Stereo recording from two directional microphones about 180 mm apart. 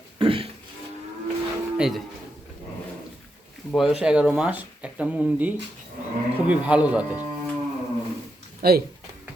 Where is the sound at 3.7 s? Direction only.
Centre (ahead or behind).